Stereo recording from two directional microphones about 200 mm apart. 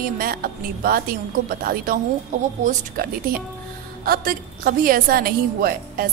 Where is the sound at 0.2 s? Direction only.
45° right (ahead or behind).